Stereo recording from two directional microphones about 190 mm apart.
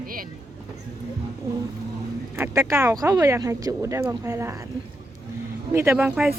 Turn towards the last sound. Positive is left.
turn(degrees=-5)  # may be behind; listen again after turning